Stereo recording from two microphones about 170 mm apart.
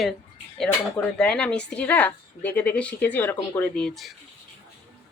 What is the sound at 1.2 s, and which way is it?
A woman's voice, 5° left (ahead or behind).